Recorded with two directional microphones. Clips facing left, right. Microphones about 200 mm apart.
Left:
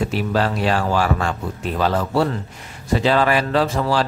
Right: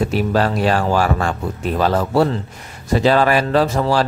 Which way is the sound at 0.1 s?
45° right (ahead or behind).